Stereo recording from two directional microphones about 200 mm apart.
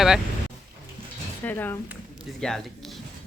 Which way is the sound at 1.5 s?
10° left (ahead or behind).